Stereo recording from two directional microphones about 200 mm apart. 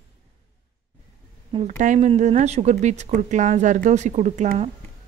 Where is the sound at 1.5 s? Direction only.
35° right (ahead or behind).